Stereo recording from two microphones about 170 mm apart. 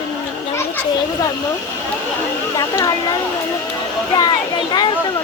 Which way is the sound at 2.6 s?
20° left (ahead or behind).